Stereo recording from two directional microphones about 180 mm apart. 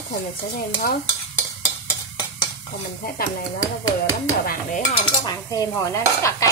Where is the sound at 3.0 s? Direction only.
55° left (ahead or behind).